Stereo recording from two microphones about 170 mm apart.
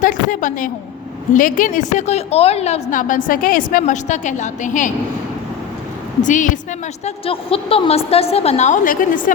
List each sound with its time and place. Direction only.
0.0 s a sound: 50° left (ahead or behind)
1.3 s a woman's voice: 50° left (ahead or behind)
6.2 s a woman's voice: 50° left (ahead or behind)
7.0 s a woman's voice: 35° left (ahead or behind); by 9.3 s 50° left (ahead or behind)